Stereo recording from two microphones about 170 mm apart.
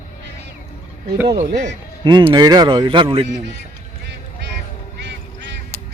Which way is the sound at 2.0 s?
25° right (ahead or behind).